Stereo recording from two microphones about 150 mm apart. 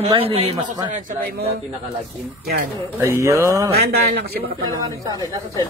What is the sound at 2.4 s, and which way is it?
Speech, 80° right.